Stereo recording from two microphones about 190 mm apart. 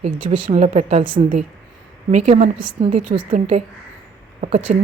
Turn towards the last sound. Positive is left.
turn(degrees=-40)  # may be behind; listen again after turning